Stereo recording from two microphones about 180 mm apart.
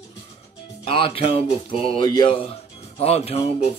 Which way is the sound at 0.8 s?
30° left (ahead or behind).